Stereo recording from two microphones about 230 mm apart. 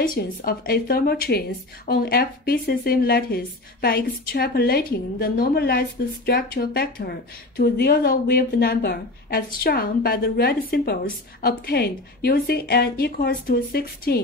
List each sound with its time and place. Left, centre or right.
0.0 s a woman's voice: left